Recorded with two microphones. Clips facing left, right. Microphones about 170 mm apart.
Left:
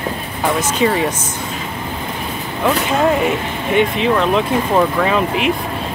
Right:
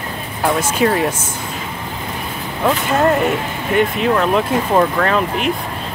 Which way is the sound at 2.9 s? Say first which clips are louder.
Right 2 dB; centre (ahead or behind).